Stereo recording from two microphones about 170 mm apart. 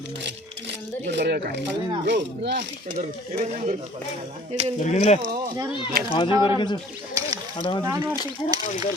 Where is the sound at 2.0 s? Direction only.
90° right.